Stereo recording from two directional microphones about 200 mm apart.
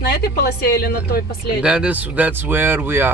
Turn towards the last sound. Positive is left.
turn(degrees=-10)  # may be behind; listen again after turning